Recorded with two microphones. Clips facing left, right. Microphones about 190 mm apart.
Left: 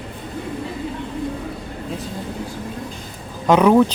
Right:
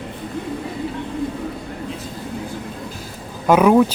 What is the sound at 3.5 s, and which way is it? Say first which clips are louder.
Speech: even; 5° right (ahead or behind).